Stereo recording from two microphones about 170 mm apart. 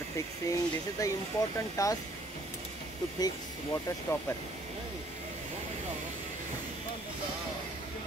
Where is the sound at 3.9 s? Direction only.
20° left (ahead or behind).